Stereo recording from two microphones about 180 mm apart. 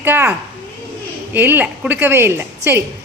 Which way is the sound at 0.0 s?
10° right (ahead or behind).